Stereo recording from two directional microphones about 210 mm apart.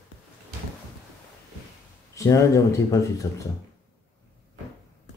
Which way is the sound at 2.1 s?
15° left (ahead or behind).